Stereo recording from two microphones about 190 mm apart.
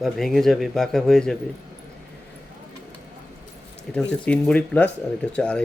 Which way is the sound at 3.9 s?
5° left (ahead or behind).